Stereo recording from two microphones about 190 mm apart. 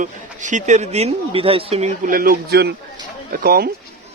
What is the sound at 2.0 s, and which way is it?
Speech, 50° right (ahead or behind).